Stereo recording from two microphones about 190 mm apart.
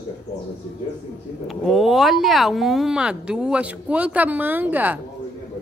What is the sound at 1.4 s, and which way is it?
Speech, centre (ahead or behind).